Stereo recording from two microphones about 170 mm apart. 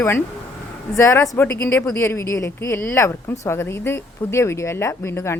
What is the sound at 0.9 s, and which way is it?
Speech, 15° left (ahead or behind).